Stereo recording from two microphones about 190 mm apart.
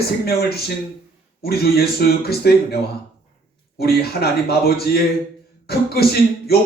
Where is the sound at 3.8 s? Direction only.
55° left (ahead or behind).